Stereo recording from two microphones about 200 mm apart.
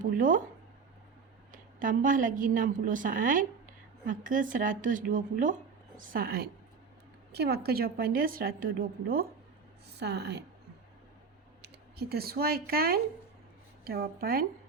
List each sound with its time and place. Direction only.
0.0 s speech: 40° right (ahead or behind)
1.8 s a woman's voice: 40° right (ahead or behind)
9.9 s speech: 55° right (ahead or behind)
11.6 s a woman's voice: 50° right (ahead or behind)